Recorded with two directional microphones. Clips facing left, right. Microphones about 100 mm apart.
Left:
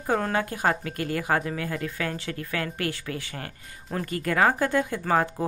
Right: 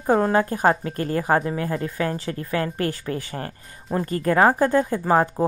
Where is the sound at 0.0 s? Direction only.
35° right (ahead or behind).